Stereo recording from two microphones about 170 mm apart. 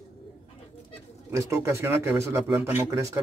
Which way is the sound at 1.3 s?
15° right (ahead or behind).